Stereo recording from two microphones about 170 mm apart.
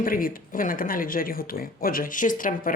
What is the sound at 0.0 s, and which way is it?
Speech, 55° left (ahead or behind).